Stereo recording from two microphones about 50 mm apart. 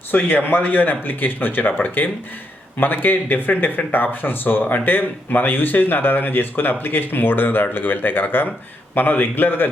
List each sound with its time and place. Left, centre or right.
0.1 s speech: left